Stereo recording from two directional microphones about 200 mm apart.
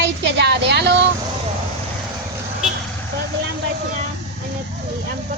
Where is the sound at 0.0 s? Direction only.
60° right (ahead or behind).